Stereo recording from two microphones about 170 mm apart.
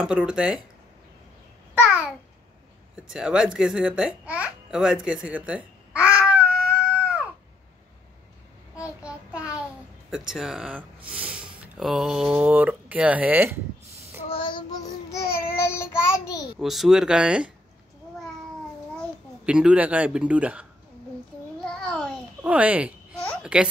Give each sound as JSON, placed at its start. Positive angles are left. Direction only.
{"t": 0.0, "sound": "speech", "side_deg": -5}
{"t": 3.0, "sound": "a child's voice", "side_deg": -5}
{"t": 8.7, "sound": "child singing", "side_deg": -5}
{"t": 10.1, "sound": "speech", "side_deg": -5}
{"t": 14.3, "sound": "child singing", "side_deg": 30}
{"t": 16.5, "sound": "speech", "side_deg": 0}
{"t": 19.4, "sound": "a man's voice", "side_deg": -5}
{"t": 21.8, "sound": "babbling", "side_deg": 5}
{"t": 22.4, "sound": "a man's voice", "side_deg": -10}